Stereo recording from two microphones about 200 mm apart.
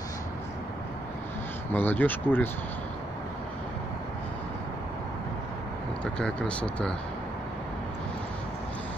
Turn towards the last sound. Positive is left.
turn(degrees=5)  # may be behind; listen again after turning